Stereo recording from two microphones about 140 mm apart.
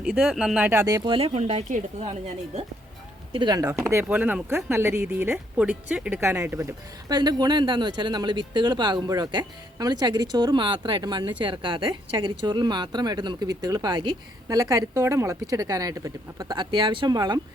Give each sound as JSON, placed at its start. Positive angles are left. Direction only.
{"t": 0.0, "sound": "speech", "side_deg": -5}
{"t": 0.7, "sound": "speech", "side_deg": -20}
{"t": 1.0, "sound": "speech", "side_deg": -40}
{"t": 1.3, "sound": "speech", "side_deg": -50}
{"t": 3.3, "sound": "speech", "side_deg": -30}
{"t": 3.9, "sound": "speech", "side_deg": -10}